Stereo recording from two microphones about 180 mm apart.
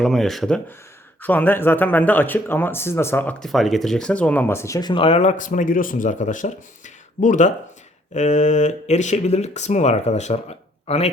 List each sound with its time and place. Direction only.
0.0 s speech: centre (ahead or behind); by 11.1 s 35° left (ahead or behind)